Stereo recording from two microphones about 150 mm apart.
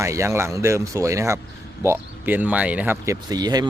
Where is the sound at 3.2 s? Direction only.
25° right (ahead or behind).